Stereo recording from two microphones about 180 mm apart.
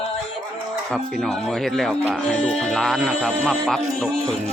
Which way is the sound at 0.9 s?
Centre (ahead or behind).